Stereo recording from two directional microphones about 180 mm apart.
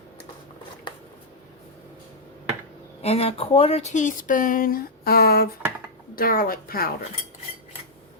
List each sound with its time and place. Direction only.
3.0 s speech: 35° left (ahead or behind); by 6.9 s 55° left (ahead or behind)